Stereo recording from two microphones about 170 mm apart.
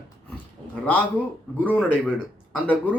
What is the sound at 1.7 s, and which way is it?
Speech, 10° left (ahead or behind).